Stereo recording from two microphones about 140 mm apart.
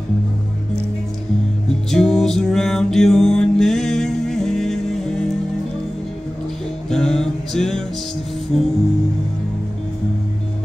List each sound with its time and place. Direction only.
1.9 s music: 5° left (ahead or behind)
6.9 s music: 5° left (ahead or behind)